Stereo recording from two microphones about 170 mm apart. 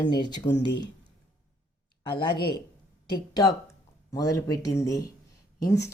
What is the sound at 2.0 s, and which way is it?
Speech, 30° left (ahead or behind).